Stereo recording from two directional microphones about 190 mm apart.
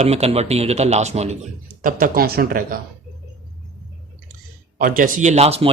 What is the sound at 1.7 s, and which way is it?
Speech, 45° right (ahead or behind).